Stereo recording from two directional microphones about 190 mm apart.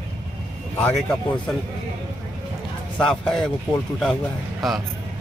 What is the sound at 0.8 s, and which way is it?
Speech, 10° left (ahead or behind).